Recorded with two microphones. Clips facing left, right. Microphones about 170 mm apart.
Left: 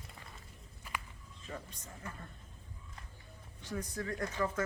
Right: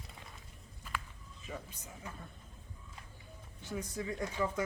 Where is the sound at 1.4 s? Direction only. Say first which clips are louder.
Even; 5° right (ahead or behind).